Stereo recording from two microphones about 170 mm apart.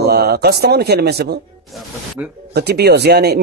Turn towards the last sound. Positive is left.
turn(degrees=-70)  # may be behind; listen again after turning